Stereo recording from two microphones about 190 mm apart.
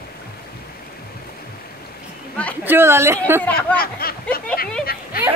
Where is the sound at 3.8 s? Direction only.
50° left (ahead or behind).